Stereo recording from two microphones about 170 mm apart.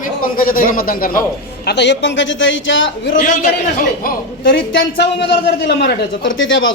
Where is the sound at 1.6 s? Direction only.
90° left.